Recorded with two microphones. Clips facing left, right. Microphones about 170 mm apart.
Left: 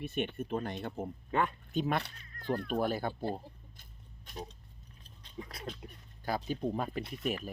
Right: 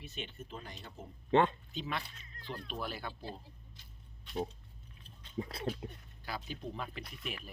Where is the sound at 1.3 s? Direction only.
25° right (ahead or behind).